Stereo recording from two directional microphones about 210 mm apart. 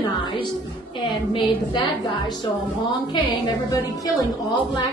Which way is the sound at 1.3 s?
25° left (ahead or behind).